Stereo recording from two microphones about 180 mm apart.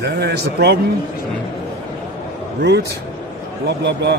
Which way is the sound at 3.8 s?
70° right (ahead or behind).